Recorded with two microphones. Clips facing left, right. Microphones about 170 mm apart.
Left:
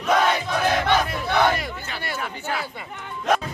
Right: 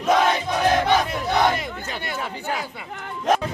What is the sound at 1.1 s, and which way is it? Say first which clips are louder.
Chatter: even; 20° right (ahead or behind).